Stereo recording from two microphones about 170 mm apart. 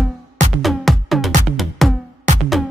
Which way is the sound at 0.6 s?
Centre (ahead or behind).